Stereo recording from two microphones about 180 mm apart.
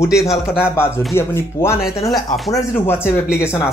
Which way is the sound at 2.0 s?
Centre (ahead or behind).